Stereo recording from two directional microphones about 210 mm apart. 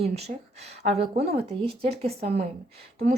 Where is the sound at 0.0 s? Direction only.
30° right (ahead or behind).